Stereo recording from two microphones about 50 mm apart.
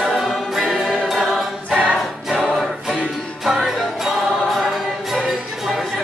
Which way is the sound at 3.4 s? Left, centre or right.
Centre.